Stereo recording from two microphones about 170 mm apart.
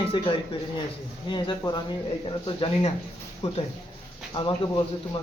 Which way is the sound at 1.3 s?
25° left (ahead or behind).